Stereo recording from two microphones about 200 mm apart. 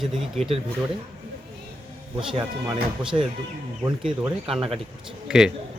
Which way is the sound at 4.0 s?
5° right (ahead or behind).